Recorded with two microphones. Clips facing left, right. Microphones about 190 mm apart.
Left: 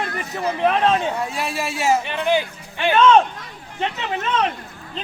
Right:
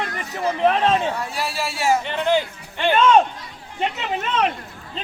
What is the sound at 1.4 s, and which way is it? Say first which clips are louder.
A man's voice: right 1 dB; 20° left (ahead or behind).